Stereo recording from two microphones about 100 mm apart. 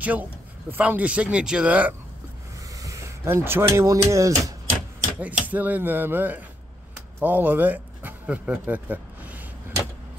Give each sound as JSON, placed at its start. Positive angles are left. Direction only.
{"t": 0.0, "sound": "speech", "side_deg": -15}
{"t": 2.8, "sound": "speech", "side_deg": -30}
{"t": 5.2, "sound": "speech", "side_deg": -15}